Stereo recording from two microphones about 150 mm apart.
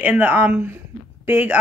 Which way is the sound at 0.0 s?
10° right (ahead or behind).